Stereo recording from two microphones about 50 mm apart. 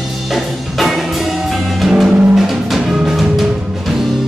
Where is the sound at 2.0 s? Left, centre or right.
Centre.